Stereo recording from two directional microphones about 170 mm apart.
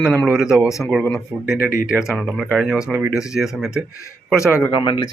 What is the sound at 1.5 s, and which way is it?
Speech, 55° left (ahead or behind).